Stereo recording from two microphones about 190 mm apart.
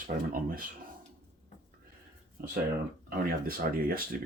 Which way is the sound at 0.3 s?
50° right (ahead or behind).